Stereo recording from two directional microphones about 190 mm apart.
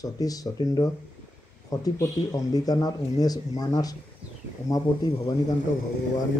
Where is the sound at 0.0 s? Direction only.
20° left (ahead or behind).